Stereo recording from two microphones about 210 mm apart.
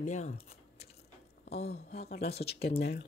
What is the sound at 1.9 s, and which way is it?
Speech, 50° left (ahead or behind).